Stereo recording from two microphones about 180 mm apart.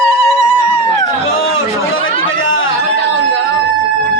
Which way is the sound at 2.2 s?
90° left.